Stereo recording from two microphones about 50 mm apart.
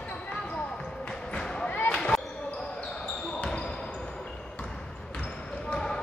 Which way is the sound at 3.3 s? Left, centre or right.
Left.